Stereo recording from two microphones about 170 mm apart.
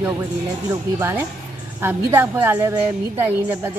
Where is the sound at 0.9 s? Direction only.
15° right (ahead or behind).